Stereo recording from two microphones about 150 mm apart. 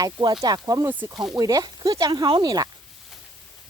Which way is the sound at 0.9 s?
10° right (ahead or behind).